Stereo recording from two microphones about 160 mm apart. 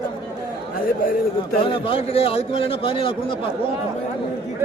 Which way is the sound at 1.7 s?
35° left (ahead or behind).